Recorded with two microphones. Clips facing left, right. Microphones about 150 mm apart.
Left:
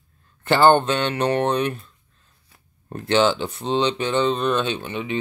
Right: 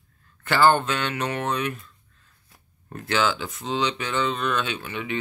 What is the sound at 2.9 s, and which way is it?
Speech, 25° left (ahead or behind).